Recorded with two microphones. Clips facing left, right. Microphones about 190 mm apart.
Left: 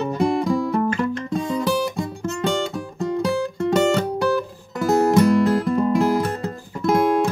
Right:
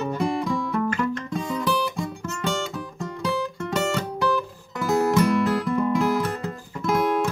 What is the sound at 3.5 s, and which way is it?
Guitar, 35° left (ahead or behind).